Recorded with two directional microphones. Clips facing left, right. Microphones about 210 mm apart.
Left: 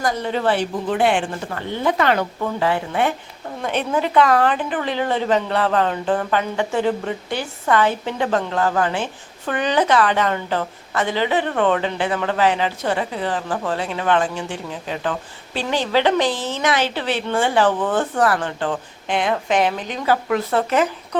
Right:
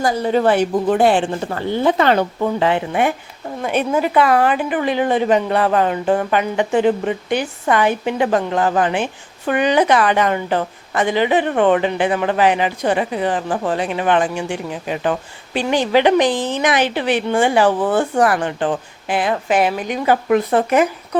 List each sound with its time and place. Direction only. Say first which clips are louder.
0.3 s a woman's voice: right 7 dB; 45° right (ahead or behind); by 21.2 s 10° right (ahead or behind)